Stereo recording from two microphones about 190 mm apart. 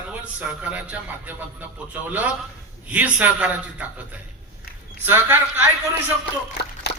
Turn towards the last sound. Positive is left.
turn(degrees=60)  # may be behind; listen again after turning